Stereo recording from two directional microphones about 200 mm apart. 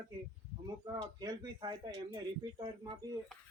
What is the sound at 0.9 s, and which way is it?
Speech, 15° right (ahead or behind).